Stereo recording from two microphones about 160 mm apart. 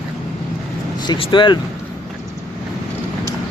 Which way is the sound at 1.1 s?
30° left (ahead or behind).